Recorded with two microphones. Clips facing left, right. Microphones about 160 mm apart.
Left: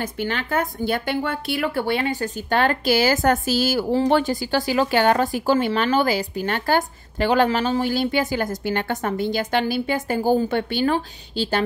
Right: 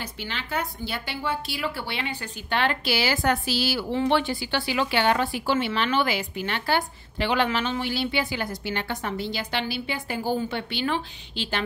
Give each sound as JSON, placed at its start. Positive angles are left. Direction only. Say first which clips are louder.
{"t": 0.0, "sound": "a woman's voice", "louder": "left 9 dB", "side_deg": 50}